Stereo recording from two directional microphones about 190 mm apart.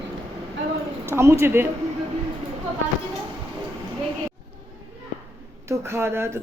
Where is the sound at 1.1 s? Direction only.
15° right (ahead or behind).